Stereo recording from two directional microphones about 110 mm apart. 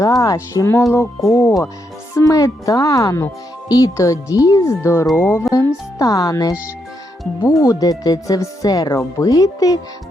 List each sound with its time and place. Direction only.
0.0 s speech: 30° left (ahead or behind)
7.6 s speech: 35° left (ahead or behind)